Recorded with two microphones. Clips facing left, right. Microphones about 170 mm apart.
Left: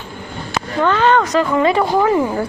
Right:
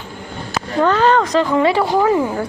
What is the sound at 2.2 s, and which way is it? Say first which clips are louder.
Speech: left 1 dB; centre (ahead or behind).